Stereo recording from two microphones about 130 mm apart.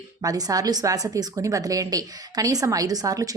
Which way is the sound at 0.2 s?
30° right (ahead or behind).